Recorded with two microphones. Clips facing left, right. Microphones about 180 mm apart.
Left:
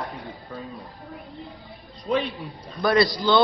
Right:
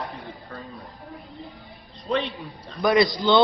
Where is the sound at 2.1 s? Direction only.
Centre (ahead or behind).